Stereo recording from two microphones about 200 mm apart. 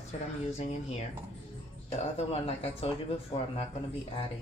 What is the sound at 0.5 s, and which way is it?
Speech, 30° left (ahead or behind).